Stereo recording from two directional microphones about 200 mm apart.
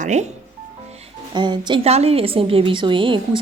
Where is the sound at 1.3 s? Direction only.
20° right (ahead or behind).